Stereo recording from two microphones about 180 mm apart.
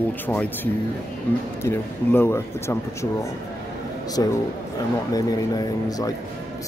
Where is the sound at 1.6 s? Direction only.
10° left (ahead or behind).